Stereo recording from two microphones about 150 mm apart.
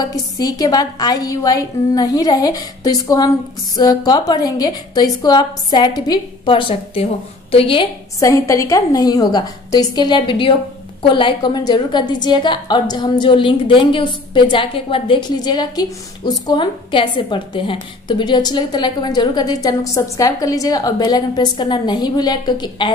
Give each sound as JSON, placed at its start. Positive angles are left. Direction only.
{"t": 0.0, "sound": "a woman's voice", "side_deg": 25}
{"t": 8.2, "sound": "a woman's voice", "side_deg": 20}